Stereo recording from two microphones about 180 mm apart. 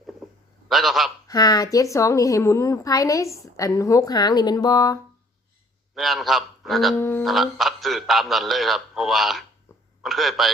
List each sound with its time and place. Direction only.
0.7 s a man's voice: centre (ahead or behind)
1.3 s a woman's voice: 20° left (ahead or behind)
5.9 s a man's voice: centre (ahead or behind)
6.9 s speech: 15° left (ahead or behind)
7.2 s a man's voice: centre (ahead or behind)